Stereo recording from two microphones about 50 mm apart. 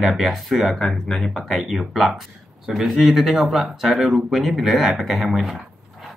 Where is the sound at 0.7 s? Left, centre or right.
Centre.